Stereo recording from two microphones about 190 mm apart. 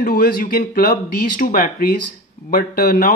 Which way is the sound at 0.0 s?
50° left (ahead or behind).